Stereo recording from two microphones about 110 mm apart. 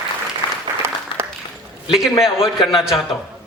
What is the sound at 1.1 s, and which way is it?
Applause, 55° left (ahead or behind).